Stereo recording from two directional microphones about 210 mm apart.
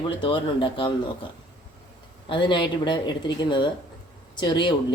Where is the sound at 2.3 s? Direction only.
20° left (ahead or behind).